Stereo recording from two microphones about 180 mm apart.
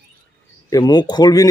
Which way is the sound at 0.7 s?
20° left (ahead or behind).